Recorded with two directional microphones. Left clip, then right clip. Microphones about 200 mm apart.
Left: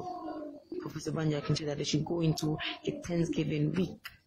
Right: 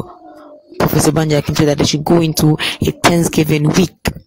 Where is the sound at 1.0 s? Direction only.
50° right (ahead or behind).